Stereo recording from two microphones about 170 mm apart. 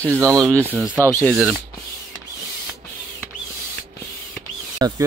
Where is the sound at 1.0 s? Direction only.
15° left (ahead or behind).